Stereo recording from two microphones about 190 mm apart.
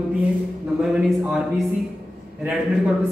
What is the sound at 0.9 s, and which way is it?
Speech, 5° right (ahead or behind).